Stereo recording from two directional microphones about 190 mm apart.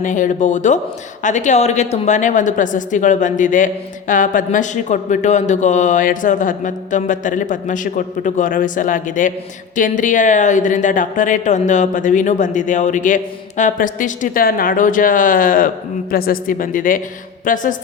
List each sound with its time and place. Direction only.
0.0 s a woman's voice: 40° left (ahead or behind)